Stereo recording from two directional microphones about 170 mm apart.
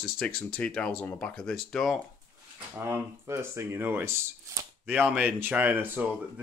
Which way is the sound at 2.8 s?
15° right (ahead or behind).